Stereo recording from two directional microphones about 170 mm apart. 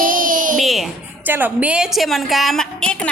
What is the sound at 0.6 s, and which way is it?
Speech, centre (ahead or behind).